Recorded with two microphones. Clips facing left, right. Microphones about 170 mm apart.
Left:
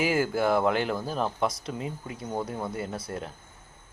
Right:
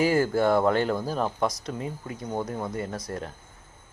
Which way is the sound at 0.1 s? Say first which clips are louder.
Right 3 dB; 5° left (ahead or behind).